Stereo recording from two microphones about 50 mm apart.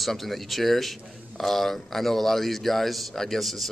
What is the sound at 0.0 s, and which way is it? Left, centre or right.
Speech, centre.